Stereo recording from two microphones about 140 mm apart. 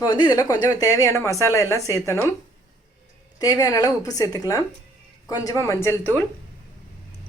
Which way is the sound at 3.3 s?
25° left (ahead or behind).